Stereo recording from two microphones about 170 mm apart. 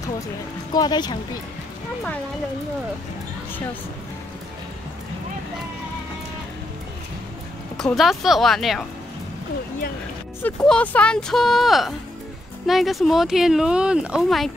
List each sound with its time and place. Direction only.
0.7 s speech: 25° left (ahead or behind)
7.7 s speech: centre (ahead or behind)
10.4 s speech: 5° left (ahead or behind)